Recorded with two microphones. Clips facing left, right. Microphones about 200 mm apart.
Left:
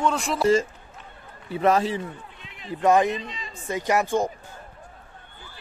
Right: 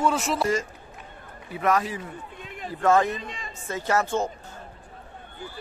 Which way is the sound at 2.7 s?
15° left (ahead or behind).